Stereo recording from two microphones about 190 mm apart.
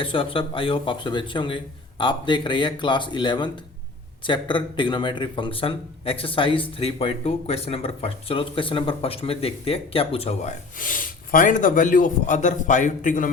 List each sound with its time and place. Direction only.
0.0 s speech: 30° left (ahead or behind); by 13.3 s 45° left (ahead or behind)